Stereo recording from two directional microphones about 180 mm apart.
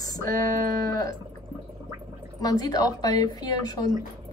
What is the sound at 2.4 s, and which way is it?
Speech, 20° left (ahead or behind).